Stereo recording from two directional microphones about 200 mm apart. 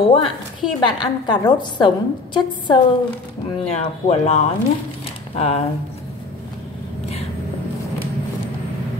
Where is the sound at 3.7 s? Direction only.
30° left (ahead or behind).